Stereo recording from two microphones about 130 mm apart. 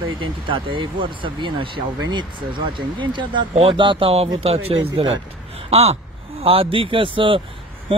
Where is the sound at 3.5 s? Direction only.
55° right (ahead or behind).